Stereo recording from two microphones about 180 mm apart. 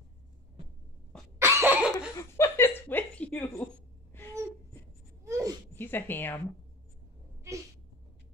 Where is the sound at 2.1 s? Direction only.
15° left (ahead or behind).